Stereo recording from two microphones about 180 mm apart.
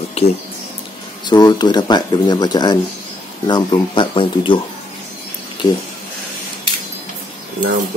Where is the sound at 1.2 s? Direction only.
25° left (ahead or behind).